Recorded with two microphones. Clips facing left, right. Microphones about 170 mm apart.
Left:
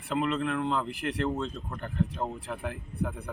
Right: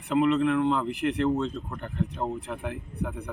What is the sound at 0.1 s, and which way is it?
Speech, 15° right (ahead or behind).